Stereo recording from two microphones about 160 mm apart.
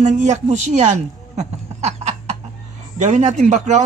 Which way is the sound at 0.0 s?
50° right (ahead or behind).